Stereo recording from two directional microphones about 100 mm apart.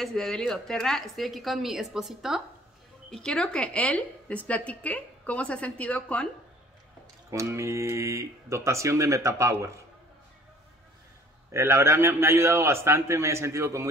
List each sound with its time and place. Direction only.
0.0 s a woman's voice: 5° left (ahead or behind)
3.1 s a woman's voice: 5° left (ahead or behind)
7.2 s speech: 30° right (ahead or behind)
11.5 s speech: 25° right (ahead or behind)